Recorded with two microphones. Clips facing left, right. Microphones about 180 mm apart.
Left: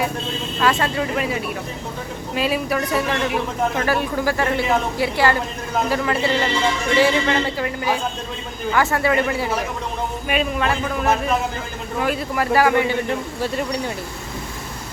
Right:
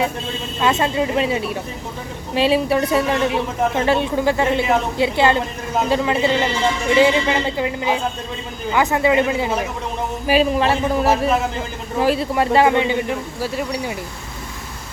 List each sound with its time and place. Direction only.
0.6 s a woman's voice: 20° right (ahead or behind)
10.2 s a man's voice: 30° right (ahead or behind)
13.1 s speech: 5° right (ahead or behind)